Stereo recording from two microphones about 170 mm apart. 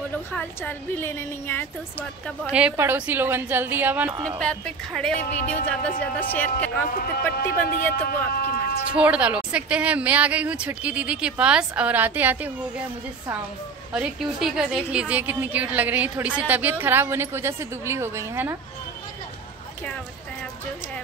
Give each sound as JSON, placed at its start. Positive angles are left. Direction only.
{"t": 0.3, "sound": "a woman's voice", "side_deg": 10}
{"t": 2.5, "sound": "a woman's voice", "side_deg": -10}
{"t": 4.4, "sound": "a woman's voice", "side_deg": 5}
{"t": 7.3, "sound": "speech", "side_deg": 65}
{"t": 8.9, "sound": "a woman's voice", "side_deg": -5}
{"t": 13.9, "sound": "a woman's voice", "side_deg": -5}